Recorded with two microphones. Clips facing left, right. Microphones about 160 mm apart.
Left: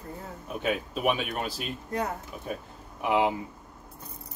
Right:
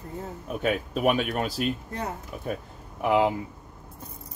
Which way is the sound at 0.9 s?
50° right (ahead or behind).